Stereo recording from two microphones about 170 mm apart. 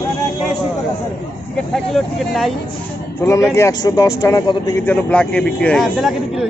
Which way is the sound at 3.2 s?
15° left (ahead or behind).